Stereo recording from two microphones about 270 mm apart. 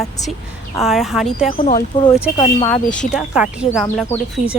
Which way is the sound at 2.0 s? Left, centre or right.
Centre.